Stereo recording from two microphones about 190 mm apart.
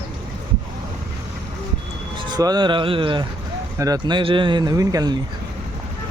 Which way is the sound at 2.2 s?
20° right (ahead or behind).